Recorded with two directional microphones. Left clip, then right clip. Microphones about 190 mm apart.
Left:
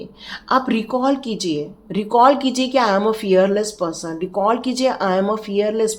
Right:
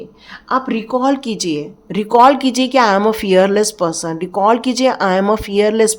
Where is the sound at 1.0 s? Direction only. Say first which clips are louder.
Right 3 dB; 30° right (ahead or behind).